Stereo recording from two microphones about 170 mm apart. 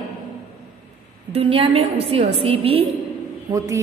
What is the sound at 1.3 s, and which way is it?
A woman's voice, 35° right (ahead or behind).